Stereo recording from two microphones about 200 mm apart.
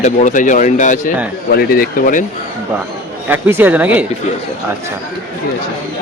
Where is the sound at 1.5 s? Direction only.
50° left (ahead or behind).